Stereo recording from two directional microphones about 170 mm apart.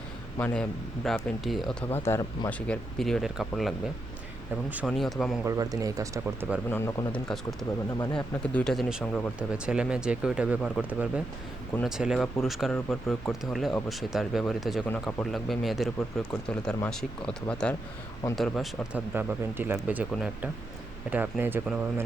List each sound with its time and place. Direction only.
0.3 s speech: 10° left (ahead or behind)
1.9 s speech: 15° left (ahead or behind)
4.9 s speech: centre (ahead or behind)
5.4 s speech: 20° right (ahead or behind)
6.7 s speech: 10° left (ahead or behind)
8.5 s speech: centre (ahead or behind)
11.8 s speech: 5° right (ahead or behind)